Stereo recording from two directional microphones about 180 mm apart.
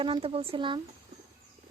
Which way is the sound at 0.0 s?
30° right (ahead or behind).